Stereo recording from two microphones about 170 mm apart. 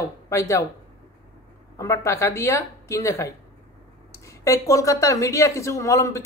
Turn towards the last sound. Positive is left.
turn(degrees=15)  # may be behind; listen again after turning